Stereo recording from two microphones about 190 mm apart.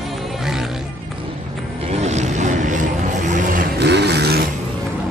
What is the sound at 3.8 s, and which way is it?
Vehicle, 60° right (ahead or behind).